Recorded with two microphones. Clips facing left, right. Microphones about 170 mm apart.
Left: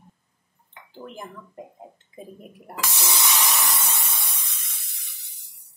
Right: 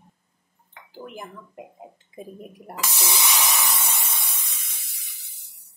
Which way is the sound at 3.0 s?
10° right (ahead or behind).